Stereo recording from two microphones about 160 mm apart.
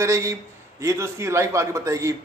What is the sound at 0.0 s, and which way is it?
A man's voice, 20° right (ahead or behind).